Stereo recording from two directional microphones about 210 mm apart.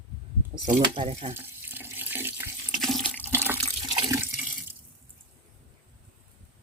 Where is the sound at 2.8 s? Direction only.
Centre (ahead or behind).